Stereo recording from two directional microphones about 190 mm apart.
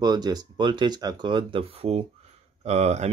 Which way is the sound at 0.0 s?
20° right (ahead or behind).